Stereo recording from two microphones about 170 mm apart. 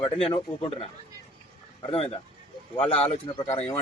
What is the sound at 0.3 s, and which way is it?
Speech, 35° left (ahead or behind).